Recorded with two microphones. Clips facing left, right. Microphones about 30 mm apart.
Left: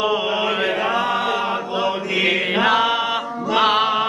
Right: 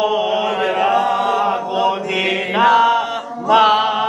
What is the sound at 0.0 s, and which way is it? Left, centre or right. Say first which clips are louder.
Chant: right 3 dB; centre.